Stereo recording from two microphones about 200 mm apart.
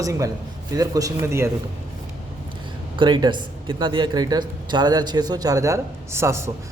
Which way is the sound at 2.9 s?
25° right (ahead or behind).